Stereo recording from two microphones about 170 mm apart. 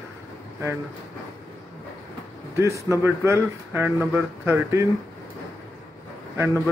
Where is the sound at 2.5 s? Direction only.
15° right (ahead or behind).